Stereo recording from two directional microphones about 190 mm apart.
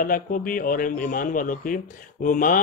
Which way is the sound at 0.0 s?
45° left (ahead or behind).